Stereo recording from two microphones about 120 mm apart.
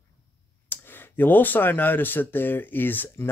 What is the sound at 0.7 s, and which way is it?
Speech, 15° left (ahead or behind).